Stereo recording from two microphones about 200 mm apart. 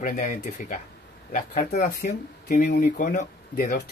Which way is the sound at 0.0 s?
40° left (ahead or behind).